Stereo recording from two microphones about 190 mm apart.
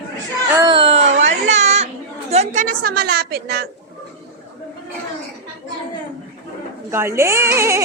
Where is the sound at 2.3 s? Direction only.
35° right (ahead or behind); by 3.6 s 55° right (ahead or behind).